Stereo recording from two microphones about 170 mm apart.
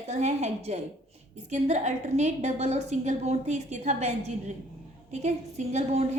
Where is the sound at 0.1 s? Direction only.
40° right (ahead or behind).